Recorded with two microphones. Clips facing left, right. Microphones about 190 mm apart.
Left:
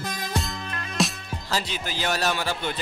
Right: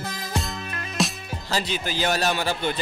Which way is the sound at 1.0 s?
Centre (ahead or behind).